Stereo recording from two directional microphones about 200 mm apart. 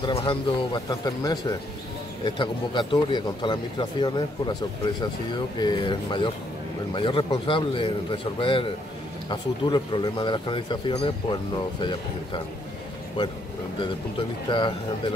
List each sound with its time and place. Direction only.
0.0 s speech: 25° left (ahead or behind)
5.6 s speech: 20° left (ahead or behind)
13.7 s speech: 25° left (ahead or behind)